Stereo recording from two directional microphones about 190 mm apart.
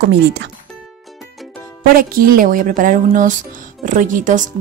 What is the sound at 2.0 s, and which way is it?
Speech, 50° right (ahead or behind).